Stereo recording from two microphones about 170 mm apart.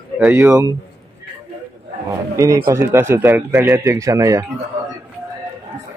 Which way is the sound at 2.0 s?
20° right (ahead or behind).